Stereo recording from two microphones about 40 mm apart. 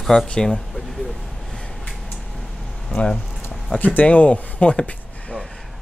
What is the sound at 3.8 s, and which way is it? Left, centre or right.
Speech, left.